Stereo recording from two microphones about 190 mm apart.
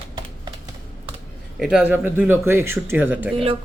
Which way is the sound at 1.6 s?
5° right (ahead or behind).